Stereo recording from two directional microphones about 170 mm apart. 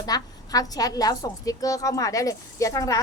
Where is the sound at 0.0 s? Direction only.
20° left (ahead or behind).